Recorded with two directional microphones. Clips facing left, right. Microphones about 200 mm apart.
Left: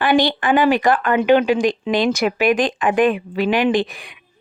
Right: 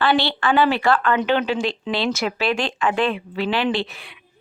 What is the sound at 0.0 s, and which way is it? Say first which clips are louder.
Speech: left 3 dB; 15° left (ahead or behind).